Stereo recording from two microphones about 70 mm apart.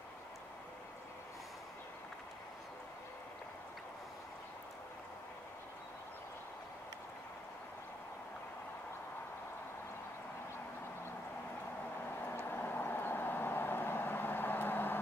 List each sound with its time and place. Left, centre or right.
12.2 s vehicle: left